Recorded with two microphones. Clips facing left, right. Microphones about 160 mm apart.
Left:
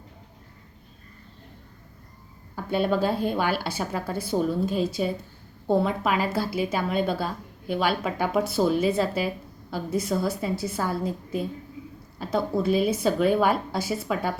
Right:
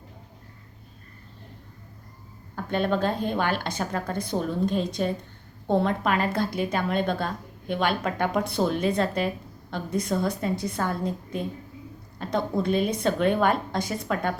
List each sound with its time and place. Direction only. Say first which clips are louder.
2.6 s a woman's voice: left 1 dB; 10° left (ahead or behind)